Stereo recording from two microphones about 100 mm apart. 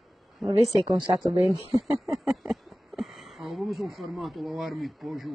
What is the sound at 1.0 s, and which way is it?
Speech, 45° right (ahead or behind).